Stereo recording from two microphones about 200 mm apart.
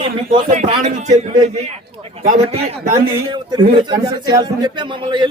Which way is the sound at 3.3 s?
20° right (ahead or behind).